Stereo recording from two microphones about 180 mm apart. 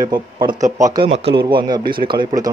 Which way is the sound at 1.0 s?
30° right (ahead or behind).